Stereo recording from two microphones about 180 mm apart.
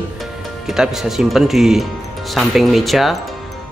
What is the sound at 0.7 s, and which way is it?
Speech, centre (ahead or behind).